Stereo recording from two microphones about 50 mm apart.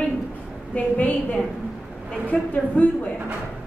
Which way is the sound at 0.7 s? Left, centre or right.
Left.